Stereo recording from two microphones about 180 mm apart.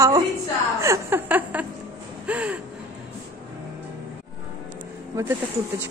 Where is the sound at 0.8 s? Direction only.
15° right (ahead or behind).